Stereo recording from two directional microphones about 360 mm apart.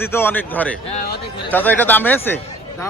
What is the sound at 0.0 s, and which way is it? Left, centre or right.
Speech, centre.